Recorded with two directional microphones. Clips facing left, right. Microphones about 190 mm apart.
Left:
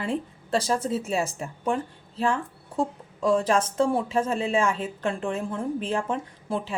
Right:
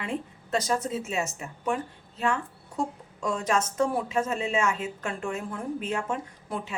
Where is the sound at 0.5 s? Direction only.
30° left (ahead or behind).